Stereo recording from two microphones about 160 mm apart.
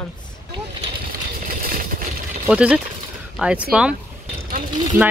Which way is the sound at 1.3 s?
65° right (ahead or behind).